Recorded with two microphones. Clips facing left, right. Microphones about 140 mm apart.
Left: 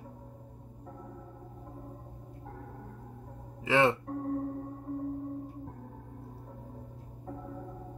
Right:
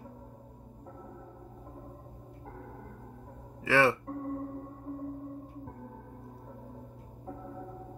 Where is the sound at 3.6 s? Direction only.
20° left (ahead or behind).